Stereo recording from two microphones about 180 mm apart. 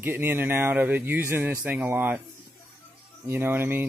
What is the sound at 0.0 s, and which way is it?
Speech, 10° right (ahead or behind).